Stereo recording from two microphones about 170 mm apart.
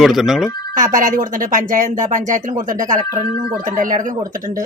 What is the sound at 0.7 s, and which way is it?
Speech, 50° right (ahead or behind).